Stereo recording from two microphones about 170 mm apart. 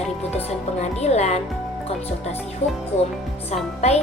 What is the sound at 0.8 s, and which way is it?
Speech, 40° left (ahead or behind).